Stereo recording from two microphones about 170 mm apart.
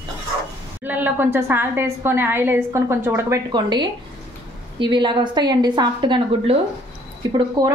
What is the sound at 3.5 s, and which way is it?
A woman's voice, 25° right (ahead or behind).